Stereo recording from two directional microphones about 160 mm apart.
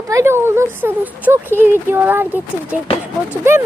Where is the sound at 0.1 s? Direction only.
15° right (ahead or behind).